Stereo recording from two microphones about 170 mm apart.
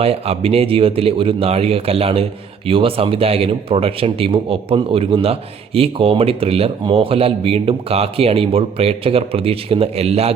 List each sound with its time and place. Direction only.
0.0 s speech: 35° right (ahead or behind)